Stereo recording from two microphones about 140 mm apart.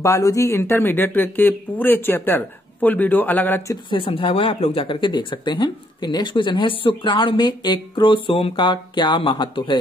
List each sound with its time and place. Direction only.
0.0 s speech: 20° left (ahead or behind)
3.9 s speech: 40° left (ahead or behind)